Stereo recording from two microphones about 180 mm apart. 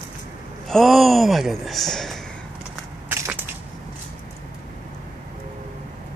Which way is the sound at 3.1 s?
10° right (ahead or behind).